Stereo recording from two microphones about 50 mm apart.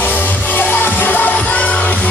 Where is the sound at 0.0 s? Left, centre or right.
Left.